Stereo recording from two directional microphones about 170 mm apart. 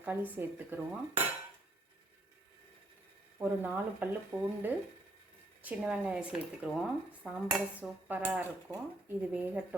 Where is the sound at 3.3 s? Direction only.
10° right (ahead or behind).